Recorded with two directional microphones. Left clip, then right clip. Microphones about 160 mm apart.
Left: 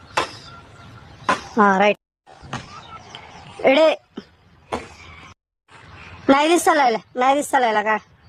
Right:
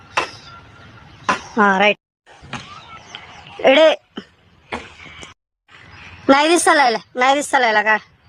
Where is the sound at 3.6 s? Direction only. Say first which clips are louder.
Right 3 dB; centre (ahead or behind).